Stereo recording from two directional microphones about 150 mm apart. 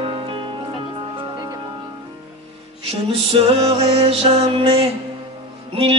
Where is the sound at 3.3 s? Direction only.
35° right (ahead or behind).